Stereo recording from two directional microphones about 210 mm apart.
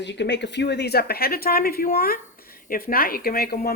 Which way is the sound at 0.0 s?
55° left (ahead or behind).